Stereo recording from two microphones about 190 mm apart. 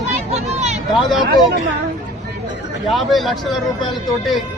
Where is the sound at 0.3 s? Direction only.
35° right (ahead or behind).